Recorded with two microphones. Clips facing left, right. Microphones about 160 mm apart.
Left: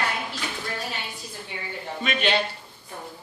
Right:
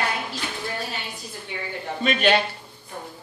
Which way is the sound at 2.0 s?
45° right (ahead or behind).